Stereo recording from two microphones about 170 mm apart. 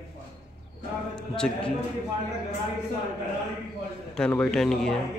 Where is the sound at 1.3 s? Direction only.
5° left (ahead or behind).